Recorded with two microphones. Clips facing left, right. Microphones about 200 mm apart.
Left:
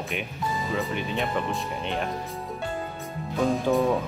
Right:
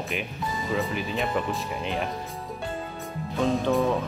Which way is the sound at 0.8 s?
Centre (ahead or behind).